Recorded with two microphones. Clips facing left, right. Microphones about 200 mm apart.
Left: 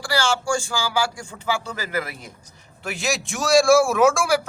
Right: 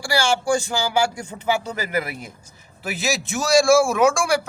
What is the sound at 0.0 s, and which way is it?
Speech, 15° right (ahead or behind).